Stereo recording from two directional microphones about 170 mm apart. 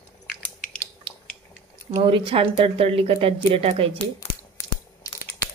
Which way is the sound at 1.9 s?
30° right (ahead or behind).